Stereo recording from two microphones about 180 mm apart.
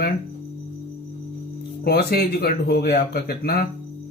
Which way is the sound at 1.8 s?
60° left (ahead or behind).